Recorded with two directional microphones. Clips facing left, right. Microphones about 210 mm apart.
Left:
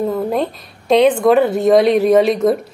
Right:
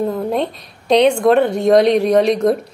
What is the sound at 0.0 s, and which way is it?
Speech, centre (ahead or behind).